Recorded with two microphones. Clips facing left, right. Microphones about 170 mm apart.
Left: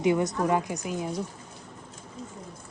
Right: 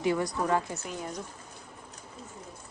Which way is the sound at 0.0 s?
20° left (ahead or behind).